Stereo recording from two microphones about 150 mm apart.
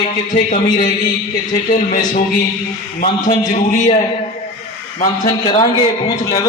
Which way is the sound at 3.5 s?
50° left (ahead or behind).